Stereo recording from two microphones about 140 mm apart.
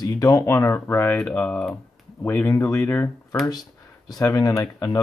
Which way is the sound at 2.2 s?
20° left (ahead or behind).